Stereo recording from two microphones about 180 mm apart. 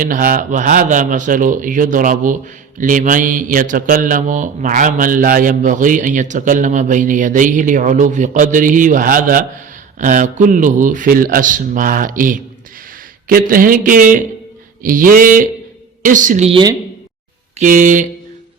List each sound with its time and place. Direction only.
0.0 s a man's voice: 50° right (ahead or behind)
16.5 s a woman's voice: 25° right (ahead or behind)
17.6 s a man's voice: 45° right (ahead or behind)